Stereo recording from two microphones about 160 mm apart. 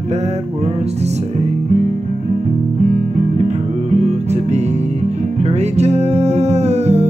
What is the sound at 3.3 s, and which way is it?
Music, 45° right (ahead or behind).